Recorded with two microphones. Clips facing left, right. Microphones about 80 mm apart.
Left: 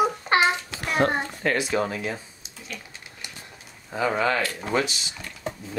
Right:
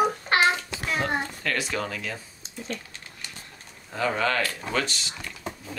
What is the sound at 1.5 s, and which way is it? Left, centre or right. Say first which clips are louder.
Speech: left 7 dB; left.